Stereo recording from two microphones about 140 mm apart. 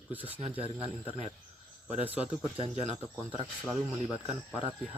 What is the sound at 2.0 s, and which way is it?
Speech, 45° right (ahead or behind).